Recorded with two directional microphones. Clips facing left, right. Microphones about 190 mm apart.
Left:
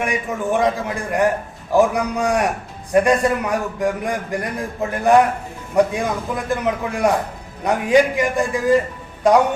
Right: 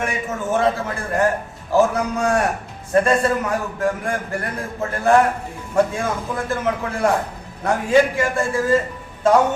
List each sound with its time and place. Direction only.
0.0 s a man's voice: 15° left (ahead or behind)